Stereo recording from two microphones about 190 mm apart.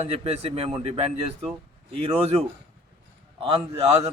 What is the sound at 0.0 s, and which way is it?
Speech, 30° right (ahead or behind).